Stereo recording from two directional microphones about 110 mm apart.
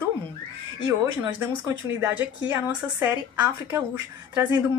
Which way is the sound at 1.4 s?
25° right (ahead or behind).